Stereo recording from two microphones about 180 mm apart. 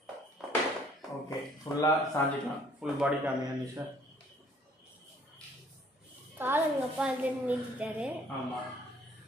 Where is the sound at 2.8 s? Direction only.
5° right (ahead or behind).